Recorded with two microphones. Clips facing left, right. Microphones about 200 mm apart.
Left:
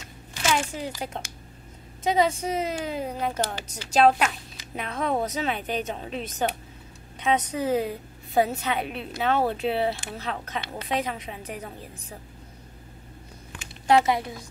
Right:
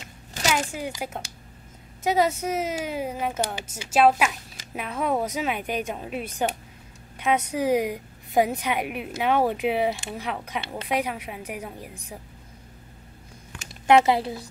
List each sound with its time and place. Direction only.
0.5 s a woman's voice: 10° right (ahead or behind)
13.8 s a woman's voice: 25° right (ahead or behind)